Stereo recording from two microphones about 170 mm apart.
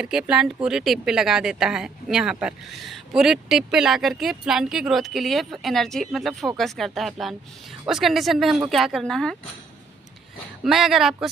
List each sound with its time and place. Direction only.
0.0 s a woman's voice: 5° right (ahead or behind)
10.6 s a woman's voice: centre (ahead or behind)